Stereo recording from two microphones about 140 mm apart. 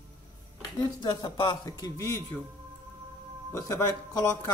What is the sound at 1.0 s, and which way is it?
Speech, 30° left (ahead or behind).